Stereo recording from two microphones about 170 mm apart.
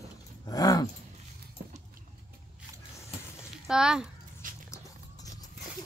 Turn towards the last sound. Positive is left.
turn(degrees=-50)  # may be behind; listen again after turning